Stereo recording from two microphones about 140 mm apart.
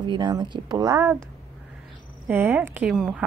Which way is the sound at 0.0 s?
35° right (ahead or behind).